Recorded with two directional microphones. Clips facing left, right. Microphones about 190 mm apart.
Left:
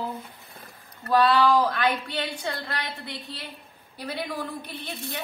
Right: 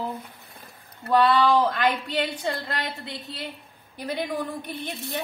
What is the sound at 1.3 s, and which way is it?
Speech, 20° right (ahead or behind).